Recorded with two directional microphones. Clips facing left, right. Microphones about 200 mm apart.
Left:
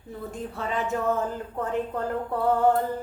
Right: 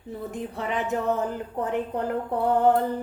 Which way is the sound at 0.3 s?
20° right (ahead or behind).